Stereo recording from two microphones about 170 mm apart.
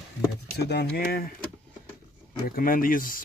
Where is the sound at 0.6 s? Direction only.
80° left; by 1.3 s 65° left (ahead or behind).